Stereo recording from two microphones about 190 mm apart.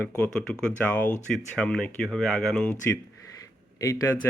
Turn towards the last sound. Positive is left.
turn(degrees=15)  # may be behind; listen again after turning